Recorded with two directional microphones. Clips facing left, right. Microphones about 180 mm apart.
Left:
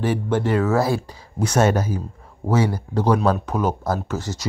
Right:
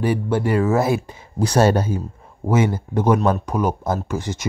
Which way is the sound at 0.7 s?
20° right (ahead or behind).